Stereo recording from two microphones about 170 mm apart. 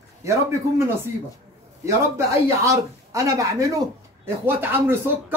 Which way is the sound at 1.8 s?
20° right (ahead or behind).